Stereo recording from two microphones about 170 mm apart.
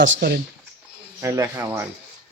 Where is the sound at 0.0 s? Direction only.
70° right (ahead or behind).